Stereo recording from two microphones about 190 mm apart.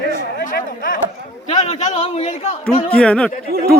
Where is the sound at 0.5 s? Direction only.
50° left (ahead or behind).